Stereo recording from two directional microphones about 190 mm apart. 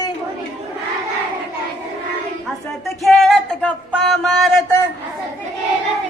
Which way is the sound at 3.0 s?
Centre (ahead or behind).